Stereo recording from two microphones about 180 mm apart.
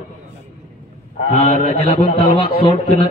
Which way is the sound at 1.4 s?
35° left (ahead or behind).